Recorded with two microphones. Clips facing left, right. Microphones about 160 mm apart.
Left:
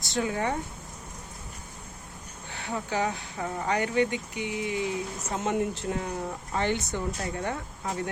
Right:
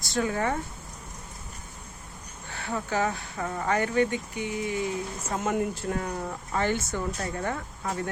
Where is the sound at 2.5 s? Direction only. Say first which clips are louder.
Right 1 dB; 15° left (ahead or behind).